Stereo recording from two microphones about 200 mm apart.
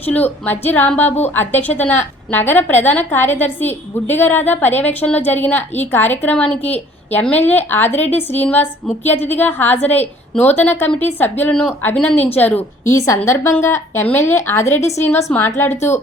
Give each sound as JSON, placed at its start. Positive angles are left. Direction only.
{"t": 0.0, "sound": "a woman's voice", "side_deg": 10}